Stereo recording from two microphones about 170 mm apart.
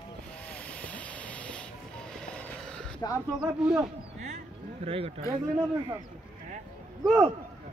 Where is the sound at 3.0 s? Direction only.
20° left (ahead or behind).